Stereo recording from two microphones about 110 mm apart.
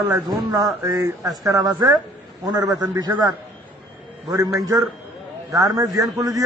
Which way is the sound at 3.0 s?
40° right (ahead or behind).